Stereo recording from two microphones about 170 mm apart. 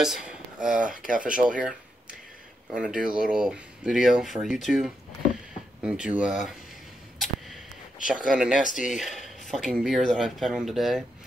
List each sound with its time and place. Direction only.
0.0 s speech: 5° right (ahead or behind)
0.8 s speech: 50° right (ahead or behind)
1.6 s a sound: 5° right (ahead or behind)
2.7 s speech: 5° right (ahead or behind)
8.1 s speech: 5° right (ahead or behind)